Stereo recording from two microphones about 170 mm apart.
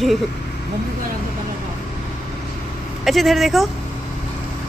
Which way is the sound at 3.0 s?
Centre (ahead or behind).